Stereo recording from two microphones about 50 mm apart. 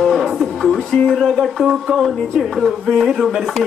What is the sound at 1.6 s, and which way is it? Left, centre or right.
Music, centre.